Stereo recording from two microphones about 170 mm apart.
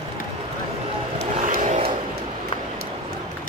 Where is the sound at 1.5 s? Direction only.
50° right (ahead or behind).